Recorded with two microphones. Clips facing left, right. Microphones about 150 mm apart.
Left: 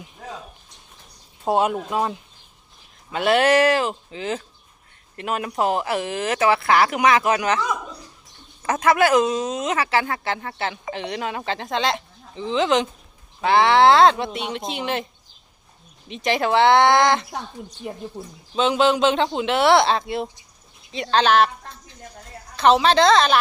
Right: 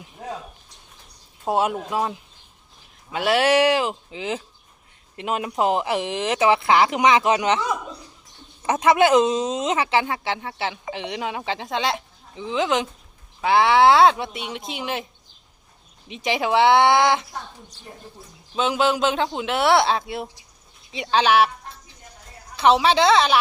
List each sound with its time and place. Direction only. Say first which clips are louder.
1.5 s speech: left 2 dB; centre (ahead or behind); by 7.6 s 20° right (ahead or behind)
8.6 s speech: right 1 dB; 20° right (ahead or behind)
16.0 s speech: left 2 dB; 10° right (ahead or behind)
18.5 s speech: left 3 dB; 5° right (ahead or behind)